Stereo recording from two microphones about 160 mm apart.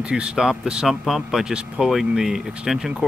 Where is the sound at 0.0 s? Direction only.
5° right (ahead or behind).